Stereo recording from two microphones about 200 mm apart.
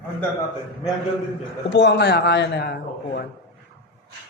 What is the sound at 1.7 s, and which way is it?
A man's voice, 60° left (ahead or behind).